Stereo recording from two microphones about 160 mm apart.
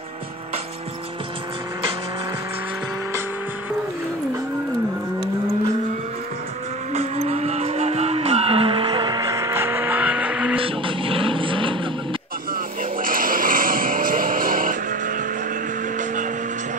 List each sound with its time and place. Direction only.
6.9 s vehicle: 40° right (ahead or behind); by 10.6 s 5° right (ahead or behind)
10.6 s vehicle: 35° right (ahead or behind)
13.0 s music: 60° right (ahead or behind)